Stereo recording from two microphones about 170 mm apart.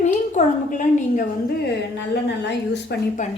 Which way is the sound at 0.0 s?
45° left (ahead or behind).